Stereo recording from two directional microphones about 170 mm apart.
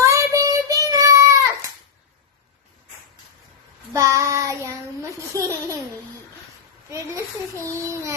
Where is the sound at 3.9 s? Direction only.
20° right (ahead or behind).